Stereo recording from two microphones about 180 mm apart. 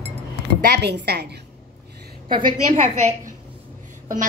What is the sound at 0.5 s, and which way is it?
Speech, 65° right (ahead or behind).